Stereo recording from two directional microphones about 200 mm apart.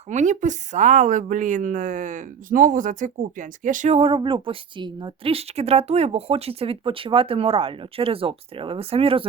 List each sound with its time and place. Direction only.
0.1 s speech: 35° right (ahead or behind)